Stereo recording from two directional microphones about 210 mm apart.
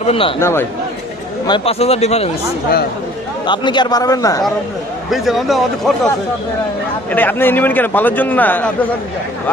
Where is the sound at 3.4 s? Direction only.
20° left (ahead or behind).